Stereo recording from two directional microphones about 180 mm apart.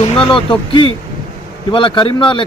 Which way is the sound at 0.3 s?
30° left (ahead or behind).